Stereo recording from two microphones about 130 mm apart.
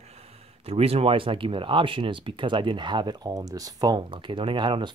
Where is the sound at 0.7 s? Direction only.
50° right (ahead or behind).